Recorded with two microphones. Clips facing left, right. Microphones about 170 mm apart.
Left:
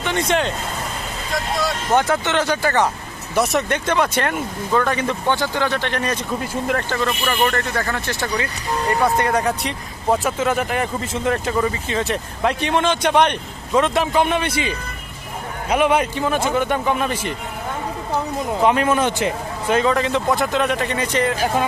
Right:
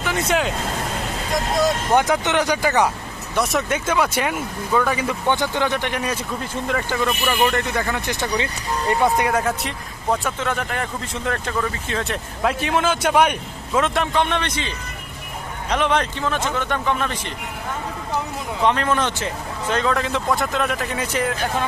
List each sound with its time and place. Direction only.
0.0 s speech: 5° right (ahead or behind)
1.3 s speech: 20° right (ahead or behind)
3.3 s speech: centre (ahead or behind)
5.3 s speech: 20° right (ahead or behind)
9.3 s speech: centre (ahead or behind)
11.9 s speech: centre (ahead or behind)
15.7 s speech: 10° left (ahead or behind)
18.6 s speech: 10° left (ahead or behind)
19.8 s speech: centre (ahead or behind)